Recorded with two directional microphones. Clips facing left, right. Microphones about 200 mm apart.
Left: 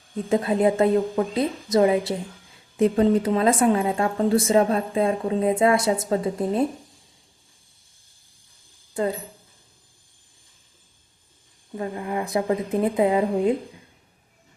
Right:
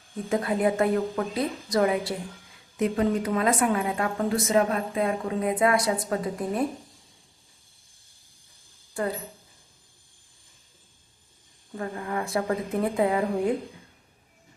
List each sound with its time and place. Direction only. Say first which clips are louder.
0.3 s speech: left 4 dB; 25° left (ahead or behind)
8.9 s a woman's voice: left 4 dB; 20° left (ahead or behind)
11.7 s speech: left 3 dB; 20° left (ahead or behind)